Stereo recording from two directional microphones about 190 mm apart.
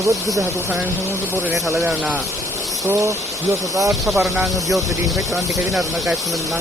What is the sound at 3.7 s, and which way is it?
Speech, 15° right (ahead or behind).